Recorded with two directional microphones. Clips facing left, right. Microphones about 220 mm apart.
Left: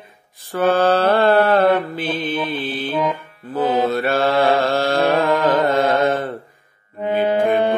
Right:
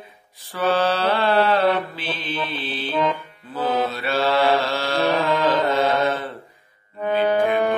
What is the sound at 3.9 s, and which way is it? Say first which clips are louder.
Mantra: left 4 dB; 50° left (ahead or behind).